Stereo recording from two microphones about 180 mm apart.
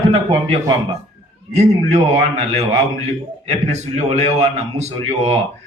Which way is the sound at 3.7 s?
40° right (ahead or behind).